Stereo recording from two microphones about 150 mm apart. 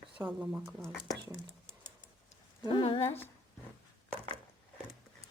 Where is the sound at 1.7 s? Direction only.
15° right (ahead or behind).